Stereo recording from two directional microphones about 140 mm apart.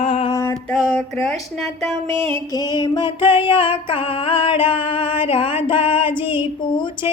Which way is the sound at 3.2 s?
40° left (ahead or behind).